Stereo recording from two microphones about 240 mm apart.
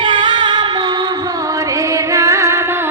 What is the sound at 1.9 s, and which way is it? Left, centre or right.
Music, centre.